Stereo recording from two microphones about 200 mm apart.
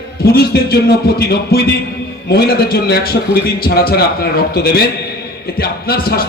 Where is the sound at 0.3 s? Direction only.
50° left (ahead or behind).